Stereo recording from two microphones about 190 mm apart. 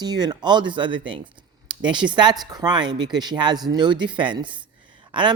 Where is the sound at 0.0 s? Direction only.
20° right (ahead or behind).